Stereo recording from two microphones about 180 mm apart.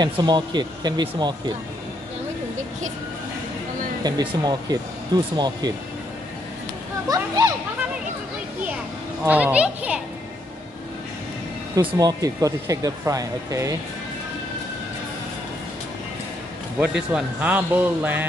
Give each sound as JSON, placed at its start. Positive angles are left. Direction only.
{"t": 0.0, "sound": "speech", "side_deg": -25}
{"t": 4.0, "sound": "speech", "side_deg": -25}
{"t": 7.1, "sound": "a sound", "side_deg": -20}
{"t": 9.2, "sound": "a man's voice", "side_deg": -10}
{"t": 11.7, "sound": "speech", "side_deg": -20}
{"t": 16.8, "sound": "a man's voice", "side_deg": -5}